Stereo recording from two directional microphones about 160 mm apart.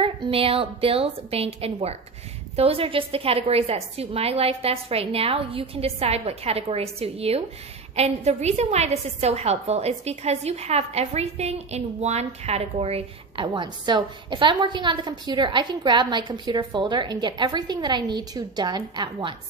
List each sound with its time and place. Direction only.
0.0 s a woman's voice: 35° right (ahead or behind)
13.5 s a woman's voice: 25° right (ahead or behind)